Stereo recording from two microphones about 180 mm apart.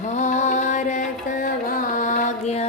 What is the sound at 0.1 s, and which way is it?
Music, 40° left (ahead or behind).